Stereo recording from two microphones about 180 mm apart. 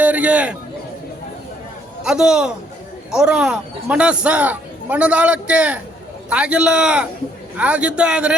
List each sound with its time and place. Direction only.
0.0 s speech: 5° right (ahead or behind)
2.0 s a man's voice: 5° right (ahead or behind)